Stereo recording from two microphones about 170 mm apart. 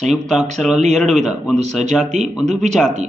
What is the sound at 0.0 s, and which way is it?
Speech, centre (ahead or behind).